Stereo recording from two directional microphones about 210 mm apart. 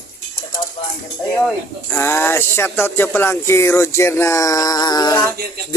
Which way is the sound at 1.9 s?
10° left (ahead or behind).